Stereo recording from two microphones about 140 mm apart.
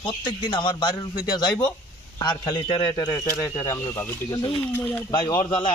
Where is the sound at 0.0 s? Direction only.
35° left (ahead or behind).